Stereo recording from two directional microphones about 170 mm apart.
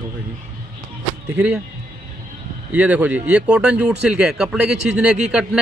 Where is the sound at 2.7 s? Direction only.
10° right (ahead or behind).